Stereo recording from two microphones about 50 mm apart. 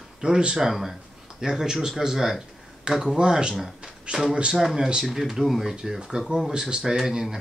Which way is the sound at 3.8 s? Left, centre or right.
Centre.